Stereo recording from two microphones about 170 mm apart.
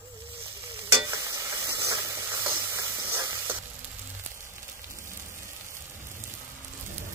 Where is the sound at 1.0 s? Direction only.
20° right (ahead or behind).